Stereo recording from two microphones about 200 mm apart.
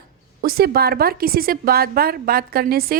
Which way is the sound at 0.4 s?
50° right (ahead or behind).